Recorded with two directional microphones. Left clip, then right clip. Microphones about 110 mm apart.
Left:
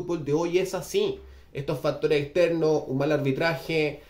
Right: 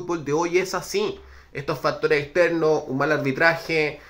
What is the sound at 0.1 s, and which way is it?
Speech, 15° left (ahead or behind).